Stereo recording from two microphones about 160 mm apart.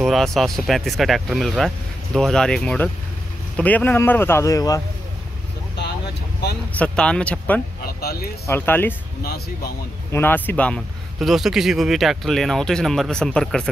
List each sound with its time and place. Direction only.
0.0 s speech: centre (ahead or behind); by 4.8 s 20° left (ahead or behind)
6.8 s speech: 5° left (ahead or behind)
7.8 s speech: 75° left (ahead or behind)
8.5 s speech: 10° left (ahead or behind)
10.1 s speech: 10° left (ahead or behind)